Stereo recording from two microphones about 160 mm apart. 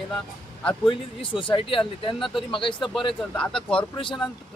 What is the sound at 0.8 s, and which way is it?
Speech, 30° left (ahead or behind).